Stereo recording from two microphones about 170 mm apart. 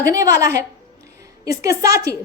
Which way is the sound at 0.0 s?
20° right (ahead or behind).